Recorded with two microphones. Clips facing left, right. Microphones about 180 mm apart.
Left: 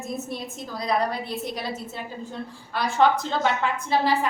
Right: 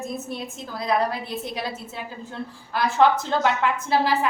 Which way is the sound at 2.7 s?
5° right (ahead or behind).